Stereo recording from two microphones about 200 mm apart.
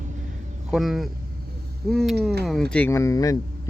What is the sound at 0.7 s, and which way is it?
Speech, centre (ahead or behind).